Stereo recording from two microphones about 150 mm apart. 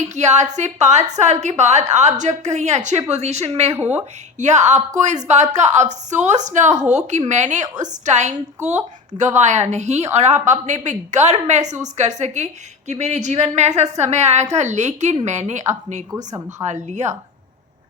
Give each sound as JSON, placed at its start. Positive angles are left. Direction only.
{"t": 0.2, "sound": "a woman's voice", "side_deg": -50}
{"t": 3.7, "sound": "speech", "side_deg": -15}
{"t": 3.9, "sound": "a woman's voice", "side_deg": -50}
{"t": 16.1, "sound": "a woman's voice", "side_deg": -25}
{"t": 16.6, "sound": "a woman's voice", "side_deg": -50}